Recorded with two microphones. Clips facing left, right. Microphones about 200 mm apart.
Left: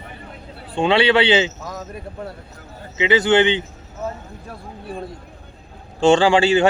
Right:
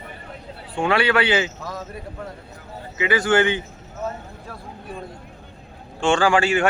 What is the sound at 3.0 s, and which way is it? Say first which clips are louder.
Speech: left 3 dB; 20° left (ahead or behind).